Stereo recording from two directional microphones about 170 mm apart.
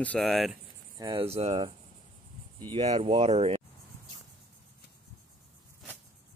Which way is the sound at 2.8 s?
40° right (ahead or behind).